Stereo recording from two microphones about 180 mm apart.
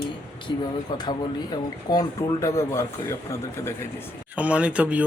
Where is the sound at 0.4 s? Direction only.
25° left (ahead or behind).